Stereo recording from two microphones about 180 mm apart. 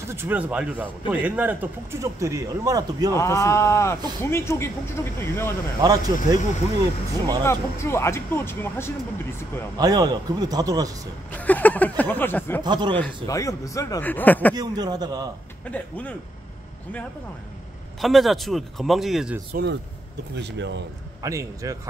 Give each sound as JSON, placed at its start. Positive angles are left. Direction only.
{"t": 0.1, "sound": "speech", "side_deg": -10}
{"t": 3.2, "sound": "speech", "side_deg": 15}
{"t": 5.8, "sound": "speech", "side_deg": -20}
{"t": 7.4, "sound": "speech", "side_deg": 15}
{"t": 9.8, "sound": "speech", "side_deg": -20}
{"t": 11.3, "sound": "a sound", "side_deg": 10}
{"t": 12.0, "sound": "speech", "side_deg": 10}
{"t": 12.6, "sound": "speech", "side_deg": -25}
{"t": 12.9, "sound": "speech", "side_deg": 15}
{"t": 14.5, "sound": "speech", "side_deg": -20}
{"t": 15.6, "sound": "speech", "side_deg": 10}
{"t": 18.0, "sound": "speech", "side_deg": 0}
{"t": 19.5, "sound": "speech", "side_deg": -70}
{"t": 21.2, "sound": "speech", "side_deg": -20}